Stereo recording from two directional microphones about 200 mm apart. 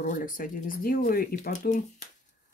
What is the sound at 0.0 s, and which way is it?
Speech, 40° left (ahead or behind).